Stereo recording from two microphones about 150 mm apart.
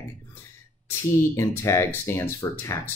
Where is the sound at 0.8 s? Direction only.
15° left (ahead or behind).